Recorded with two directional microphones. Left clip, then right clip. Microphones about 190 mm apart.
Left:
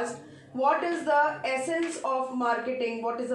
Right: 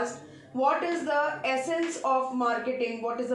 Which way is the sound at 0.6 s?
20° right (ahead or behind).